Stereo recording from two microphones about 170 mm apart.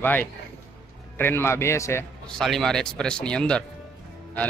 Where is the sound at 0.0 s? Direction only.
10° left (ahead or behind).